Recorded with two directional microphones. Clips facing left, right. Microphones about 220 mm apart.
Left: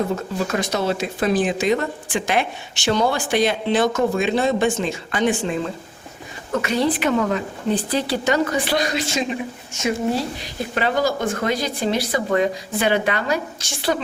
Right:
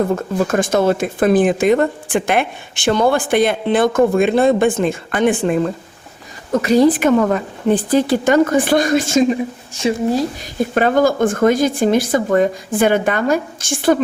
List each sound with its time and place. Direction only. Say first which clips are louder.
0.2 s speech: right 6 dB; 50° right (ahead or behind)
6.6 s speech: right 8 dB; 40° right (ahead or behind)
9.7 s speech: right 5 dB; 35° right (ahead or behind)
10.4 s speech: right 7 dB; 50° right (ahead or behind)